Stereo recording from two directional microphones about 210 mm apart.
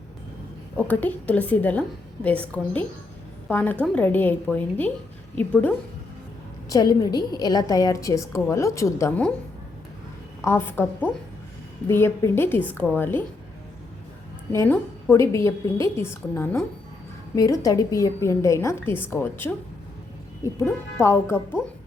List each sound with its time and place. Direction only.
0.8 s a woman's voice: 10° left (ahead or behind)
6.7 s a woman's voice: 20° left (ahead or behind)
10.4 s a woman's voice: 10° left (ahead or behind)
11.9 s a woman's voice: 10° left (ahead or behind)
14.5 s a woman's voice: 10° left (ahead or behind)
20.6 s a woman's voice: 15° left (ahead or behind)